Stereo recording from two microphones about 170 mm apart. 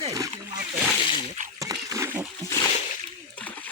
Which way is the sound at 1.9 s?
15° right (ahead or behind).